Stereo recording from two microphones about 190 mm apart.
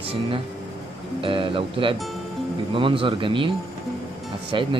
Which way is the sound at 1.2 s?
25° right (ahead or behind).